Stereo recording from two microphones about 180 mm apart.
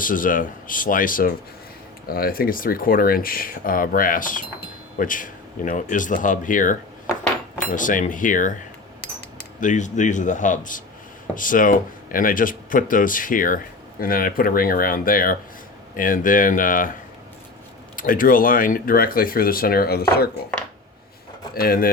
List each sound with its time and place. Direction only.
0.0 s speech: 50° left (ahead or behind)
9.6 s speech: 45° left (ahead or behind)
17.9 s speech: 50° left (ahead or behind)
21.5 s speech: 55° left (ahead or behind)